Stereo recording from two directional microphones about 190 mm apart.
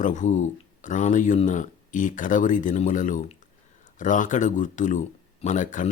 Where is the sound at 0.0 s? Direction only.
40° left (ahead or behind).